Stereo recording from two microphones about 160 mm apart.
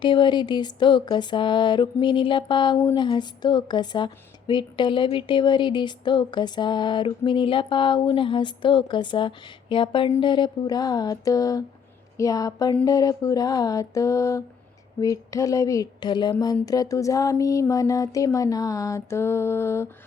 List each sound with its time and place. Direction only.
0.0 s a woman's voice: 30° left (ahead or behind)